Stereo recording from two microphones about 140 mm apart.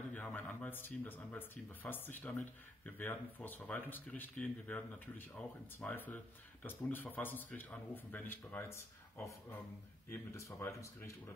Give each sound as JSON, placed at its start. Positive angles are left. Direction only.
{"t": 0.1, "sound": "speech", "side_deg": 10}